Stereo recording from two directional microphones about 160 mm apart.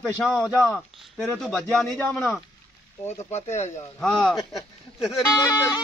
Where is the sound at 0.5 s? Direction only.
15° left (ahead or behind).